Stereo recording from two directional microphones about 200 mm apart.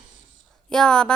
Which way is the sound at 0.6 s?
5° left (ahead or behind).